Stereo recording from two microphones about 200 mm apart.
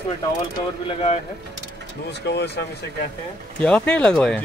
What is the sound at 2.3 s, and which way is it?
Speech, 55° left (ahead or behind).